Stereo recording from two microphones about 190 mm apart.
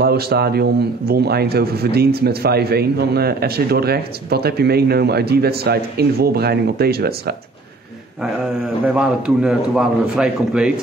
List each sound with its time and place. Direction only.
0.0 s speech: 55° right (ahead or behind)
8.8 s a man's voice: 5° right (ahead or behind)